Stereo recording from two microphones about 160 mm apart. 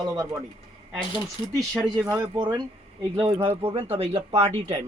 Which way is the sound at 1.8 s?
Centre (ahead or behind).